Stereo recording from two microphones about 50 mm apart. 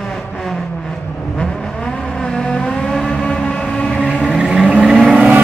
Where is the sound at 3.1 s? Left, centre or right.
Left.